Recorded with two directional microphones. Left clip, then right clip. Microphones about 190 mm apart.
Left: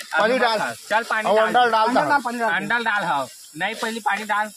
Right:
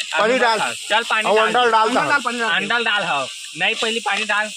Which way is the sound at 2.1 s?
45° left (ahead or behind).